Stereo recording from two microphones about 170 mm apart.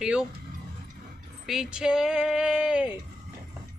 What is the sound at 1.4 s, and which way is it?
Speech, 5° right (ahead or behind).